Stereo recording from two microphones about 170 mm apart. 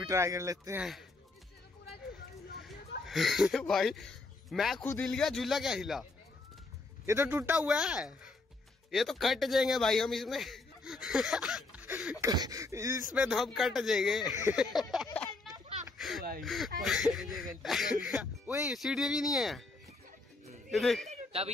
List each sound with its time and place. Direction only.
0.0 s speech: 20° right (ahead or behind)
0.7 s speech: centre (ahead or behind)
3.1 s speech: centre (ahead or behind)
7.1 s a man's voice: 15° right (ahead or behind)
12.2 s speech: 20° right (ahead or behind)
13.1 s speech: 5° right (ahead or behind)
15.5 s a sound: centre (ahead or behind)
16.4 s speech: centre (ahead or behind)
20.7 s speech: centre (ahead or behind)
21.1 s a sound: 35° right (ahead or behind)